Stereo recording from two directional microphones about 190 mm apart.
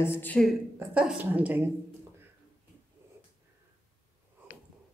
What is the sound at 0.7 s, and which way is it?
Speech, 5° right (ahead or behind).